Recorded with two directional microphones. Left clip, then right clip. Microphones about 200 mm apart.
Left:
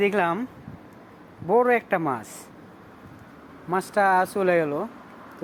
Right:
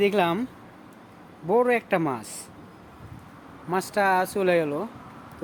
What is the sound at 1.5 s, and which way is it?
Speech, 5° right (ahead or behind).